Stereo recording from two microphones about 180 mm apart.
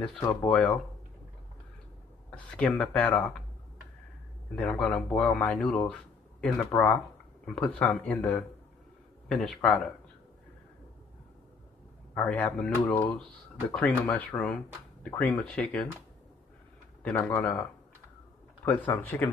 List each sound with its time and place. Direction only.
0.0 s speech: 5° left (ahead or behind)
2.3 s speech: 5° left (ahead or behind)
4.6 s speech: 5° left (ahead or behind)
6.7 s speech: 15° left (ahead or behind)
7.4 s speech: 5° left (ahead or behind)
12.1 s speech: 10° left (ahead or behind)
17.0 s speech: 15° left (ahead or behind)
18.7 s speech: 10° left (ahead or behind)